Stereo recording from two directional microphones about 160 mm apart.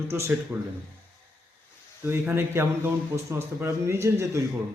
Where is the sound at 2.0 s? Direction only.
15° right (ahead or behind).